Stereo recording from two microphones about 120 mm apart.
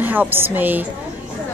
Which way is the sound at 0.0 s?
15° right (ahead or behind).